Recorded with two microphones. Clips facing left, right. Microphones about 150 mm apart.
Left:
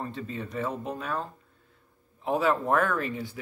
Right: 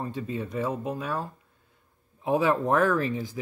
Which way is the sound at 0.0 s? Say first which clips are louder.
Right 3 dB; 15° right (ahead or behind).